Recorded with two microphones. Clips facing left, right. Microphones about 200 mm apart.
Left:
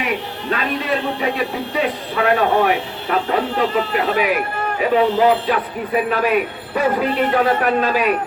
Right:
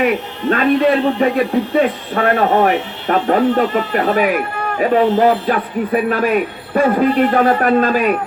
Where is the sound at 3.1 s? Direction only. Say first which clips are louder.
Right 6 dB; 45° right (ahead or behind).